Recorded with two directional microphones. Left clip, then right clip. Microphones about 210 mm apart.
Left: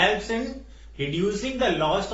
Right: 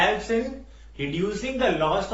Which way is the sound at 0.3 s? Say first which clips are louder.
Right 3 dB; 25° right (ahead or behind).